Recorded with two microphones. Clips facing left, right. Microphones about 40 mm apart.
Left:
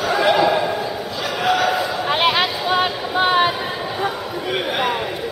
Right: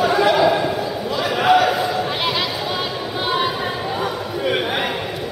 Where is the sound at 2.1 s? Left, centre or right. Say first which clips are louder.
Left 4 dB; left.